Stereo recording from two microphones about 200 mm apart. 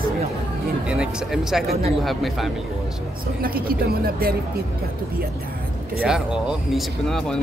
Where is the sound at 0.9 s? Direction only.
5° right (ahead or behind).